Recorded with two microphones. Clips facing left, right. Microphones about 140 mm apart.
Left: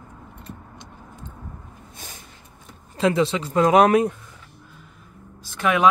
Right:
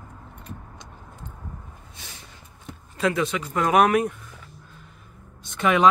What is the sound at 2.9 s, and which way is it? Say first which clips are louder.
Speech: left 4 dB; 25° left (ahead or behind).